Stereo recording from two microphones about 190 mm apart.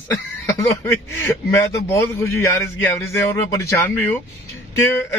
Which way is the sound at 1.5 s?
15° left (ahead or behind).